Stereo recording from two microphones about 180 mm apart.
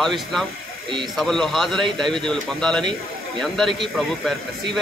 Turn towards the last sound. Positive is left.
turn(degrees=0)  # may be behind; listen again after turning